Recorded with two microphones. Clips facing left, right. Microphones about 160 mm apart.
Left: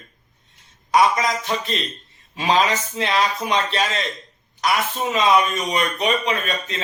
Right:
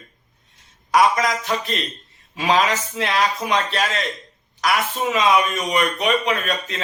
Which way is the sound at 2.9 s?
Centre (ahead or behind).